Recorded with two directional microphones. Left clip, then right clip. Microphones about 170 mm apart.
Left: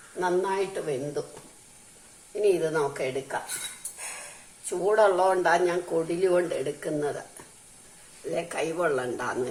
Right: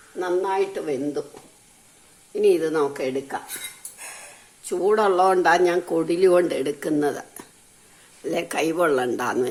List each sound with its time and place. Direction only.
0.2 s a woman's voice: 50° right (ahead or behind)
2.4 s speech: 65° right (ahead or behind)
4.6 s speech: 65° right (ahead or behind)
8.3 s speech: 60° right (ahead or behind)